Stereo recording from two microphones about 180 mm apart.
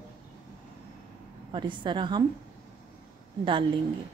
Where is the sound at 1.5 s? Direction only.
25° right (ahead or behind).